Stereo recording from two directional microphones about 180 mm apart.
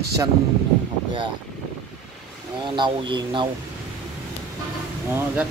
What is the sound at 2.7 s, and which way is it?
Speech, 25° right (ahead or behind).